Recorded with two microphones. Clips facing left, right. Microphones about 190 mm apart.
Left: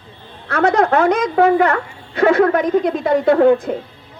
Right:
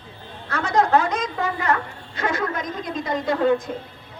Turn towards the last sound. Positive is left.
turn(degrees=65)  # may be behind; listen again after turning